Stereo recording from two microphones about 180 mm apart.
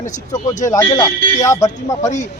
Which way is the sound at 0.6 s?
20° left (ahead or behind).